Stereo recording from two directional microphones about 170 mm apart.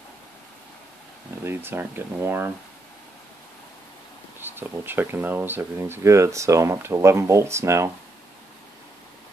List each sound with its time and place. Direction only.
1.4 s speech: 15° right (ahead or behind)
4.4 s speech: 10° right (ahead or behind)